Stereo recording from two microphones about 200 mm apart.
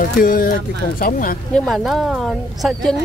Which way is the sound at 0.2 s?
45° left (ahead or behind).